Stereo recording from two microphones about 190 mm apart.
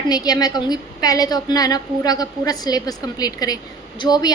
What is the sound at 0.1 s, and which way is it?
A woman's voice, 20° left (ahead or behind).